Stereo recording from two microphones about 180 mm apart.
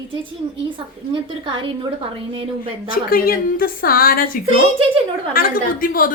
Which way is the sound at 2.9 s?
55° left (ahead or behind).